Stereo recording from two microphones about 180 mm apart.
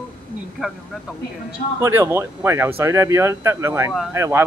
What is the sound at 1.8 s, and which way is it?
Speech, 15° right (ahead or behind).